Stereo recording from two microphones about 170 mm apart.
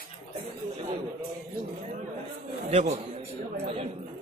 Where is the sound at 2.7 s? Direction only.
40° right (ahead or behind).